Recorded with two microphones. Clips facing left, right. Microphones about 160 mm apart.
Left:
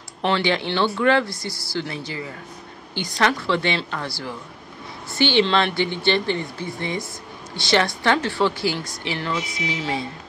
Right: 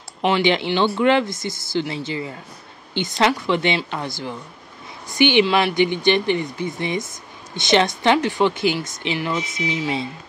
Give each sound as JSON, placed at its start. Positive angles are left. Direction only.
{"t": 0.2, "sound": "a woman's voice", "side_deg": -15}